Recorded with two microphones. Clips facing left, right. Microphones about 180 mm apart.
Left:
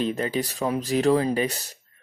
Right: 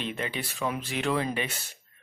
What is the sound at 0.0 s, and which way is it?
Speech, 40° left (ahead or behind).